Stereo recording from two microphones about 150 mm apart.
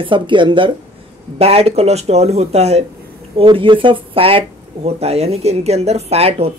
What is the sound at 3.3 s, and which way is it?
Speech, 35° right (ahead or behind).